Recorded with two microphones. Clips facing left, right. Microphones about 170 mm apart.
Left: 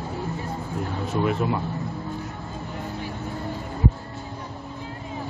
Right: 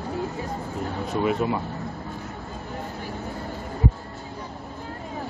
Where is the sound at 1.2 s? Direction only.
Centre (ahead or behind).